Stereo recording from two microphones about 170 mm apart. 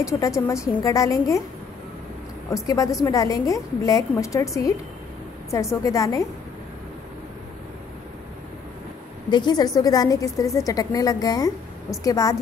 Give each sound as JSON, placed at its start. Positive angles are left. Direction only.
{"t": 0.0, "sound": "a woman's voice", "side_deg": 20}
{"t": 2.5, "sound": "a woman's voice", "side_deg": 20}
{"t": 9.3, "sound": "a woman's voice", "side_deg": 25}